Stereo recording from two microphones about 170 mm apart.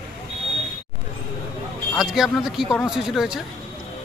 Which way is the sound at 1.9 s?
Centre (ahead or behind).